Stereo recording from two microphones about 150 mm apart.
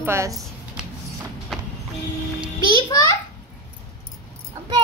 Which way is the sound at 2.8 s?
25° left (ahead or behind).